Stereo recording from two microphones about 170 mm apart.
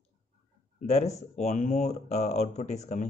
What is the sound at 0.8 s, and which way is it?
Speech, 40° left (ahead or behind).